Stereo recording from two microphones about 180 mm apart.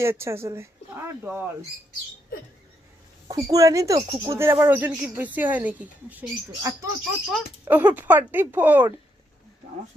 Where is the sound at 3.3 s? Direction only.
20° right (ahead or behind).